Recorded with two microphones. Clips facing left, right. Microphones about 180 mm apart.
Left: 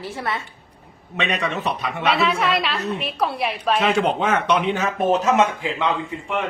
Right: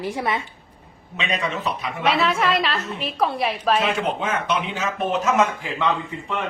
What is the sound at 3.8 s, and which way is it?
Speech, 70° left (ahead or behind).